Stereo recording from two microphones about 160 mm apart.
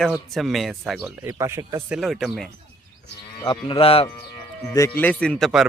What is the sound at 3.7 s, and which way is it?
Speech, 35° left (ahead or behind).